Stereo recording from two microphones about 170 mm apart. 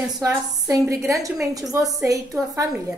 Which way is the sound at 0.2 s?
20° right (ahead or behind).